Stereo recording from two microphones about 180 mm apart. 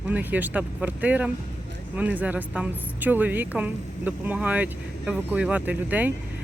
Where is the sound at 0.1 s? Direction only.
10° right (ahead or behind).